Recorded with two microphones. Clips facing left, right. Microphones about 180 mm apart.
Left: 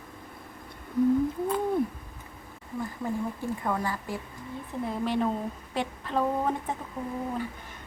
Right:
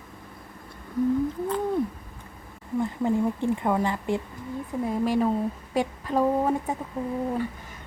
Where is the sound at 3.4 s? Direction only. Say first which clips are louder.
Right 6 dB; 25° right (ahead or behind).